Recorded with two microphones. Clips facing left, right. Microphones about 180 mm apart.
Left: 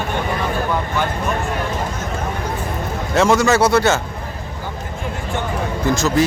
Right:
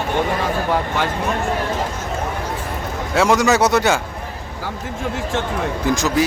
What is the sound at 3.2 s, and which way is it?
Speech, 15° right (ahead or behind).